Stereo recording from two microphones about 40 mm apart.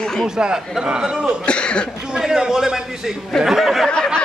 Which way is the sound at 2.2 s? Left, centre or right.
Centre.